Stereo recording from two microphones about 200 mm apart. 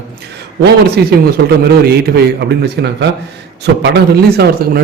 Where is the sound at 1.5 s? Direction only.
50° right (ahead or behind).